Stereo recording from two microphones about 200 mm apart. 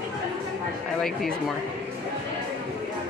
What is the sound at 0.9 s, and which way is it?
Speech, 5° left (ahead or behind).